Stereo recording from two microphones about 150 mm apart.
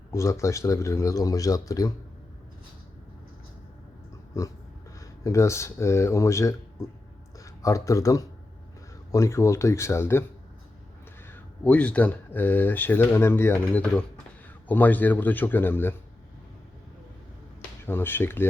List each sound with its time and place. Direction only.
0.1 s speech: 20° left (ahead or behind)
4.4 s speech: 20° left (ahead or behind)
11.3 s speech: 10° left (ahead or behind)
17.8 s speech: 15° left (ahead or behind)